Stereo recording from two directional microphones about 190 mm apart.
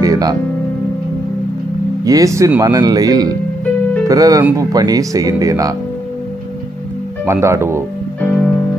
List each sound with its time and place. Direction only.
0.0 s music: 20° right (ahead or behind)
2.0 s speech: 15° right (ahead or behind)
7.2 s speech: 15° right (ahead or behind)
8.2 s music: 5° left (ahead or behind)